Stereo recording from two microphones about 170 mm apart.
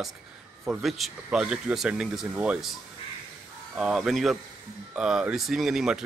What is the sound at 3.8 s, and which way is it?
Speech, centre (ahead or behind).